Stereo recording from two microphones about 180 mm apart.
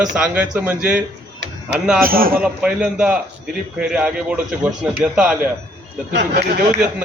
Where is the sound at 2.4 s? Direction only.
5° right (ahead or behind).